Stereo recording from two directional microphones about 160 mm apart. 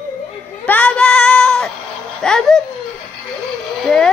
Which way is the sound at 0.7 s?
10° left (ahead or behind).